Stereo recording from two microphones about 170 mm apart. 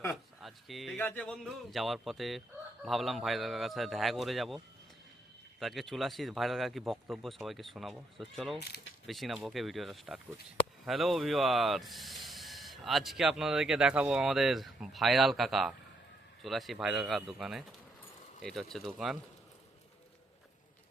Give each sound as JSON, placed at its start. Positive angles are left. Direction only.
{"t": 0.4, "sound": "speech", "side_deg": 0}
{"t": 0.9, "sound": "a sound", "side_deg": 10}
{"t": 1.5, "sound": "speech", "side_deg": 0}
{"t": 8.7, "sound": "speech", "side_deg": 70}
{"t": 9.0, "sound": "speech", "side_deg": 0}